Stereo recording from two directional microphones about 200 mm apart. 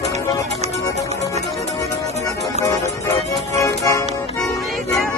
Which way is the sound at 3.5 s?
15° left (ahead or behind).